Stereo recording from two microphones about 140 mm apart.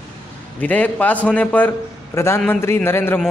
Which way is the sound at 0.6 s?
10° left (ahead or behind).